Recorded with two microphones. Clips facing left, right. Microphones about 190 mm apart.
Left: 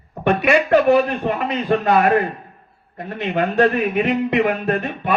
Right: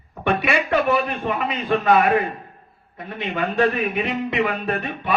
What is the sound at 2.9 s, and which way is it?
A man's voice, 40° left (ahead or behind).